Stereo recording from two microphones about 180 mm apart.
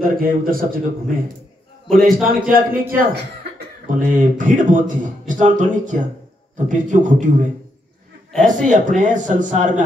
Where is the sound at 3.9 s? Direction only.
50° right (ahead or behind).